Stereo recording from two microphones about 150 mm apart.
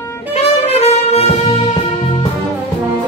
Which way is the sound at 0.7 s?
45° left (ahead or behind).